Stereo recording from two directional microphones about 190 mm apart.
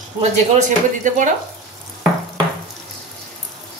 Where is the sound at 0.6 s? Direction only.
40° right (ahead or behind).